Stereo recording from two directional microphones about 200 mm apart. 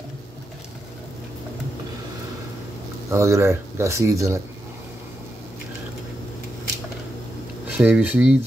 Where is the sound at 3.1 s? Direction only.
15° right (ahead or behind).